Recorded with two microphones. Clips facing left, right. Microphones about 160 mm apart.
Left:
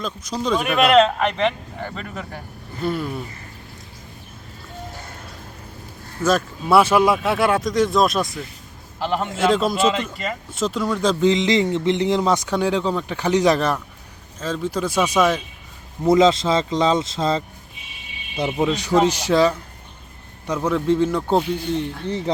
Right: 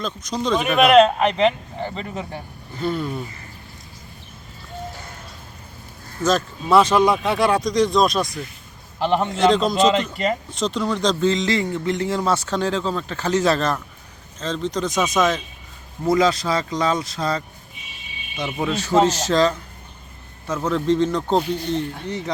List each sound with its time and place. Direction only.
0.0 s speech: 5° left (ahead or behind)
1.3 s speech: 20° right (ahead or behind)
2.8 s speech: 5° left (ahead or behind)
6.2 s speech: 10° left (ahead or behind)
9.0 s a man's voice: 20° right (ahead or behind)
9.3 s speech: 5° left (ahead or behind)
16.0 s speech: 20° left (ahead or behind)
18.5 s speech: 15° left (ahead or behind)
22.0 s speech: 30° left (ahead or behind)